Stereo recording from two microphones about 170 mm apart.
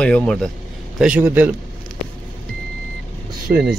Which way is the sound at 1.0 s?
10° right (ahead or behind).